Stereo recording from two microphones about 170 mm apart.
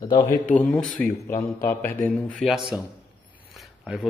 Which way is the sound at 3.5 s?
Centre (ahead or behind).